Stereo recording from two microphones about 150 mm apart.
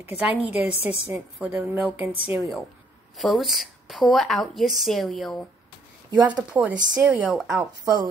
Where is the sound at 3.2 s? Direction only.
Centre (ahead or behind).